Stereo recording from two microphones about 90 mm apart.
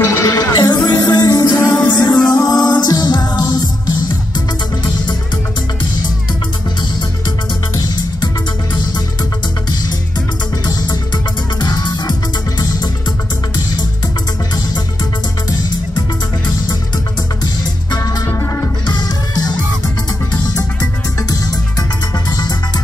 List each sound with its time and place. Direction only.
0.0 s music: 30° left (ahead or behind); by 3.9 s 45° left (ahead or behind)
7.7 s music: 45° left (ahead or behind)
11.6 s music: 50° left (ahead or behind)
17.9 s music: 40° left (ahead or behind)